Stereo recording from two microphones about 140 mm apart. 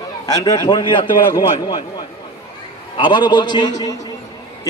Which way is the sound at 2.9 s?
35° left (ahead or behind).